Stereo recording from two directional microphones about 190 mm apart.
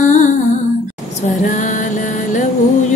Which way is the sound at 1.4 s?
40° left (ahead or behind).